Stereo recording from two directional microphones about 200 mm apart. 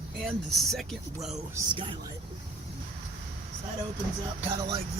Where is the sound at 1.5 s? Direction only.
25° right (ahead or behind).